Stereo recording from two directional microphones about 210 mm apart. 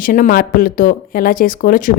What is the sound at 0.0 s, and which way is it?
Speech, 40° left (ahead or behind).